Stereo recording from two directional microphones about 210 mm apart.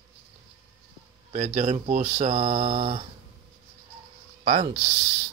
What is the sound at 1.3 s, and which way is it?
Speech, 35° right (ahead or behind).